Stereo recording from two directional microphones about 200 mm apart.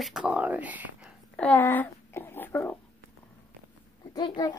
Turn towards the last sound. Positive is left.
turn(degrees=20)  # may be behind; listen again after turning